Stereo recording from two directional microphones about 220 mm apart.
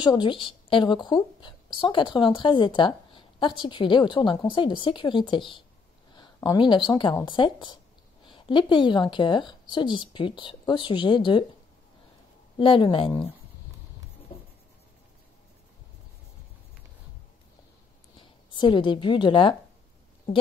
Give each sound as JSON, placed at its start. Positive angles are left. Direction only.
{"t": 0.0, "sound": "a woman's voice", "side_deg": 20}
{"t": 12.5, "sound": "a woman's voice", "side_deg": 20}
{"t": 18.2, "sound": "a woman's voice", "side_deg": 20}